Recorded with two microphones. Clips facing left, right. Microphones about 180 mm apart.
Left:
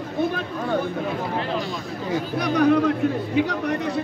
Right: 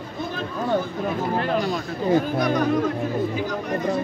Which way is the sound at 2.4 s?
65° left (ahead or behind).